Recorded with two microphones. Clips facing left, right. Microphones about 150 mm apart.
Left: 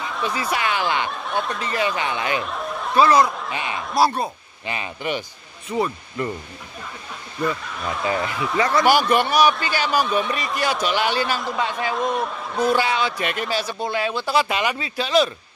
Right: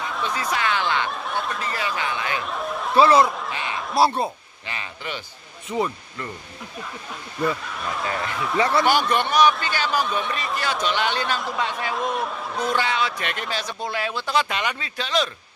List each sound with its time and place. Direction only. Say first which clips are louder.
0.0 s speech: left 1 dB; 5° left (ahead or behind)
1.1 s snicker: left 2 dB; centre (ahead or behind)
2.0 s a man's voice: left 3 dB; 15° left (ahead or behind)
2.4 s a sound: even; centre (ahead or behind)
3.1 s a man's voice: even; centre (ahead or behind)
4.0 s speech: even; 25° right (ahead or behind)
4.6 s a man's voice: left 6 dB; 15° left (ahead or behind)
5.7 s a man's voice: left 1 dB; centre (ahead or behind)
7.4 s a man's voice: even; centre (ahead or behind)
8.8 s a man's voice: left 3 dB; 10° left (ahead or behind)